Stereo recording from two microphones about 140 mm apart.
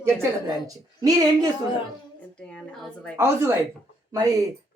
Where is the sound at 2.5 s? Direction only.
5° left (ahead or behind).